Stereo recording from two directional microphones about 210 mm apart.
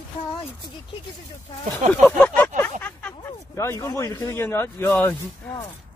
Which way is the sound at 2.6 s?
10° left (ahead or behind).